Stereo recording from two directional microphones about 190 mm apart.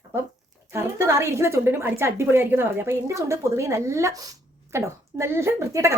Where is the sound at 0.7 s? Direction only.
15° right (ahead or behind).